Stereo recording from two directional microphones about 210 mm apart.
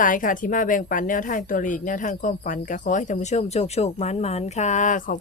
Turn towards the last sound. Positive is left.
turn(degrees=40)  # may be behind; listen again after turning